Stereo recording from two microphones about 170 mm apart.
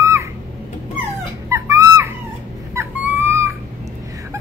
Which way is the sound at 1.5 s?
15° right (ahead or behind).